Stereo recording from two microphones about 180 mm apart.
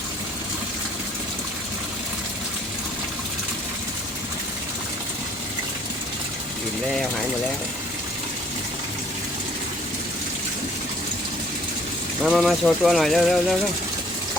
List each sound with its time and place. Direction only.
12.2 s speech: centre (ahead or behind)